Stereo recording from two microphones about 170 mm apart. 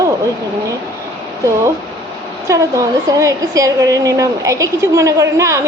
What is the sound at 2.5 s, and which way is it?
A woman's voice, 20° right (ahead or behind).